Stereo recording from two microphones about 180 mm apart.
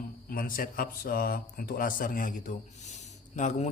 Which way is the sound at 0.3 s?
55° left (ahead or behind).